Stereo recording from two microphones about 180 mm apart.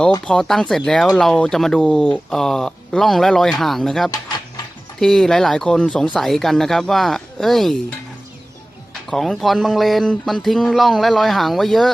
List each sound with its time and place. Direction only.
0.3 s speech: 5° left (ahead or behind)
9.0 s speech: centre (ahead or behind)